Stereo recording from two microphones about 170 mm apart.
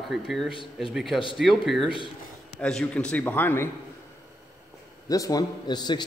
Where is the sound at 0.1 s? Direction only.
Centre (ahead or behind).